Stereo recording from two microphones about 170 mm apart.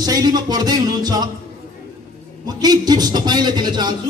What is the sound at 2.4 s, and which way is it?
Speech, 25° right (ahead or behind).